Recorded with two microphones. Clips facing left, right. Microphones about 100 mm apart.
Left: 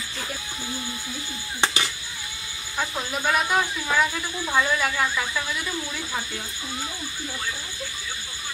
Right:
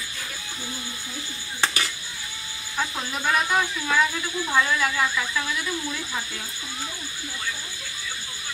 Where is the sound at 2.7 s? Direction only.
5° left (ahead or behind).